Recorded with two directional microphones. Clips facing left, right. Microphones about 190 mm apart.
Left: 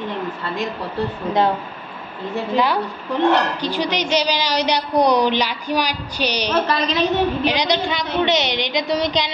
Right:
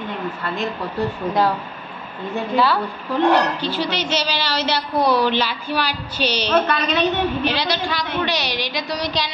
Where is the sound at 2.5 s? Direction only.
15° left (ahead or behind).